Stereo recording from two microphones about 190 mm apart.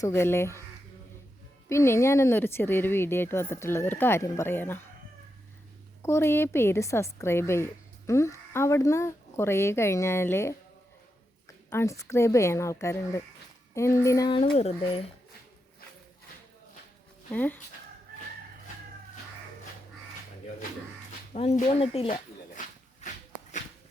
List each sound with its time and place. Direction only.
0.0 s a woman's voice: 15° left (ahead or behind)
1.7 s a woman's voice: 15° left (ahead or behind)
6.0 s a woman's voice: 15° left (ahead or behind)
11.7 s a woman's voice: 15° left (ahead or behind)
14.5 s speech: 30° left (ahead or behind)
17.3 s a woman's voice: 10° left (ahead or behind)
21.3 s speech: 35° left (ahead or behind)
23.0 s shuffle: 40° left (ahead or behind)